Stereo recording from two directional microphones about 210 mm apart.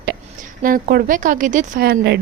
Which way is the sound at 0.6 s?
40° right (ahead or behind).